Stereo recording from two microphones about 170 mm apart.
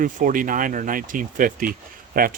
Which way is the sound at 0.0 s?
55° right (ahead or behind).